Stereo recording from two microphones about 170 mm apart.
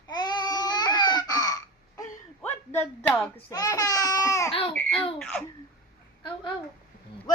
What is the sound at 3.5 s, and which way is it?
A child's voice, 20° left (ahead or behind).